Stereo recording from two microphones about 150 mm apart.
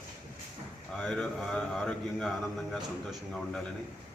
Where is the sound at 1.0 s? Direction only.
5° left (ahead or behind).